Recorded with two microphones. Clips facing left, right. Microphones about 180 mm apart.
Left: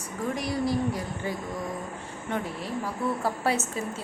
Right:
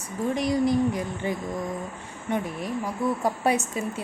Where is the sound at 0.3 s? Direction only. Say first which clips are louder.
Right 6 dB; 20° right (ahead or behind).